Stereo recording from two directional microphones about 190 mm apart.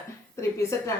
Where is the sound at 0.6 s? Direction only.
15° left (ahead or behind).